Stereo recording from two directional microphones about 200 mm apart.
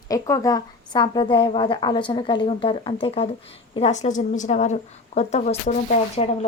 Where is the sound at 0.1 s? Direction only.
20° left (ahead or behind).